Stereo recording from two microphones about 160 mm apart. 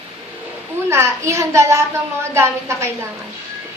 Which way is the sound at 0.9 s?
15° right (ahead or behind).